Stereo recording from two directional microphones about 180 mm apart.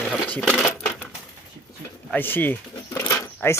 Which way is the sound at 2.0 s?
10° left (ahead or behind).